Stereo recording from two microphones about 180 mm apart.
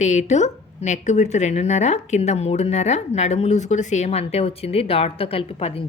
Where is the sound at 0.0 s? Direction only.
40° left (ahead or behind).